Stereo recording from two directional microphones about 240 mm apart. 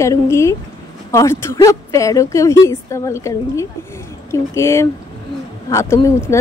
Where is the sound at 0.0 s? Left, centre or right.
Centre.